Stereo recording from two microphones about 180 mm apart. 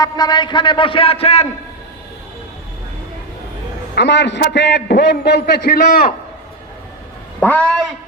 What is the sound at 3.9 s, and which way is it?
A man's voice, 75° left (ahead or behind).